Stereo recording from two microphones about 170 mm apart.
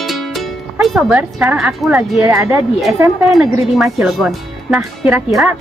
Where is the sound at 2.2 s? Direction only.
15° right (ahead or behind).